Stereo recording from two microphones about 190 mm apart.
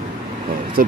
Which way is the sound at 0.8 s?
50° right (ahead or behind).